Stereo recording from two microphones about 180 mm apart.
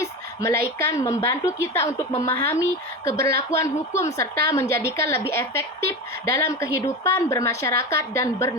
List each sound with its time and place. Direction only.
0.0 s a woman's voice: 15° left (ahead or behind)